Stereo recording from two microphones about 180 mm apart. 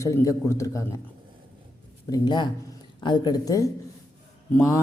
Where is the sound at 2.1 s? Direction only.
25° left (ahead or behind).